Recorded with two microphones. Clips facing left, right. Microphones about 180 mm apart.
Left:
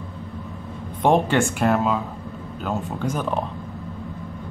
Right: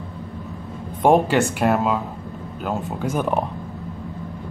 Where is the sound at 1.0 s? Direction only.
5° right (ahead or behind).